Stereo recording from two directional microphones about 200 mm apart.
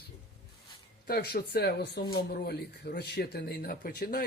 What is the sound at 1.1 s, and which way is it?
Speech, 50° left (ahead or behind).